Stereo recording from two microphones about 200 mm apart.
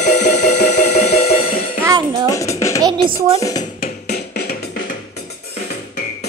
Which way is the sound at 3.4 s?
20° left (ahead or behind).